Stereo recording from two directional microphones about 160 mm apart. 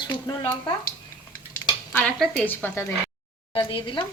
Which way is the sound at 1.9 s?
5° left (ahead or behind).